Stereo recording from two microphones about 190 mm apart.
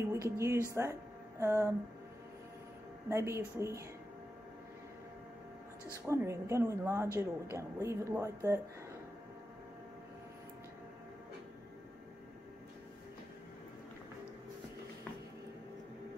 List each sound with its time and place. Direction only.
0.0 s speech: 15° right (ahead or behind)
3.1 s speech: 15° right (ahead or behind)
6.0 s speech: 15° right (ahead or behind)